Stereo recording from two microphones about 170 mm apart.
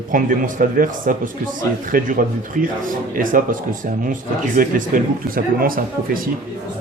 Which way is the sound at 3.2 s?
55° right (ahead or behind).